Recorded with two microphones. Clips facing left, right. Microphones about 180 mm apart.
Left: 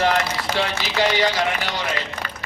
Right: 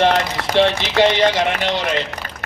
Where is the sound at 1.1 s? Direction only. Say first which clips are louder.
Right 4 dB; 25° right (ahead or behind).